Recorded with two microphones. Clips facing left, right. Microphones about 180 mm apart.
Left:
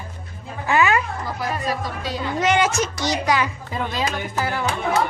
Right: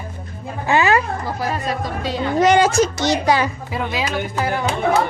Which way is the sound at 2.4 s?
35° right (ahead or behind).